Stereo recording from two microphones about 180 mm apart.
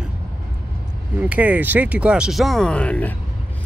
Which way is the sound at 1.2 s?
10° right (ahead or behind).